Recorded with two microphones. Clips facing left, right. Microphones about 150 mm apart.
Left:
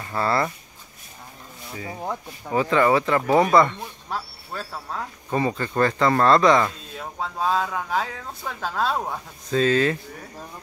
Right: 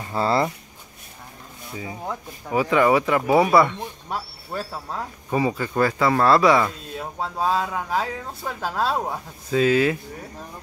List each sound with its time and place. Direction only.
0.0 s speech: 20° right (ahead or behind)
2.5 s speech: 10° right (ahead or behind)